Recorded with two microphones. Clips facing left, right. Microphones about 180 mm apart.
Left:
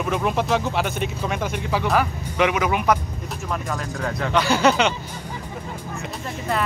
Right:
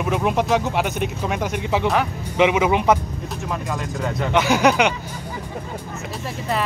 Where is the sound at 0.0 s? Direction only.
10° right (ahead or behind).